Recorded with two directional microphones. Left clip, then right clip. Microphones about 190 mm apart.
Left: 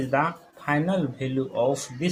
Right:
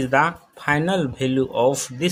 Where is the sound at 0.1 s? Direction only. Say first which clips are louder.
Right 6 dB; 45° right (ahead or behind).